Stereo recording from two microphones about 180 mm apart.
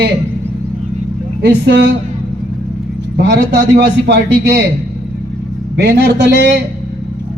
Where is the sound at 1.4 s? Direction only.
70° right (ahead or behind).